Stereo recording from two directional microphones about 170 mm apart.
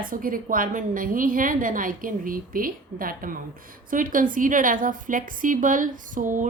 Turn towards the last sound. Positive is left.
turn(degrees=-50)  # may be behind; listen again after turning